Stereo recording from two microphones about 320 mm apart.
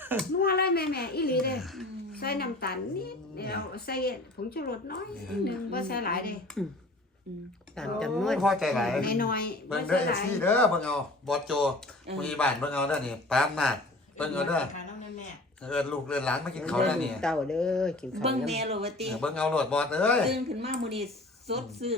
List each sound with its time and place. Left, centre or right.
0.0 s a sound: centre
0.4 s a woman's voice: left
6.5 s a man's voice: centre
7.8 s a man's voice: centre
9.0 s a woman's voice: left
9.6 s a man's voice: centre
15.6 s a man's voice: centre
18.2 s speech: centre
19.1 s a man's voice: centre
20.6 s speech: centre